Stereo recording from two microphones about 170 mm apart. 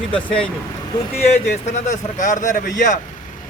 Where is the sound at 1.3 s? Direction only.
45° left (ahead or behind).